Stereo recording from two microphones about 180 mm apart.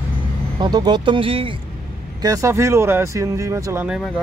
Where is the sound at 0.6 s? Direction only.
25° right (ahead or behind).